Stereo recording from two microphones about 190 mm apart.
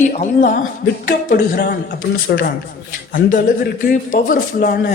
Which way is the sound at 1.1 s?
55° left (ahead or behind).